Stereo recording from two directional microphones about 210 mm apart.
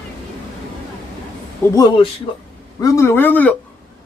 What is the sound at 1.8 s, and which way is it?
A man's voice, 20° left (ahead or behind).